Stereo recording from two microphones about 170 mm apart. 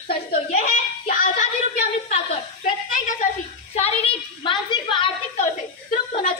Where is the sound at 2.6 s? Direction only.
50° left (ahead or behind).